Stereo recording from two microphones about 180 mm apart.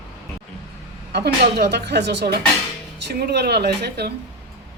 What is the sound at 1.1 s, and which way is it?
A woman's voice, 65° right (ahead or behind).